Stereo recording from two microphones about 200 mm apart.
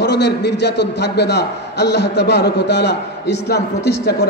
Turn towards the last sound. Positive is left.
turn(degrees=55)  # may be behind; listen again after turning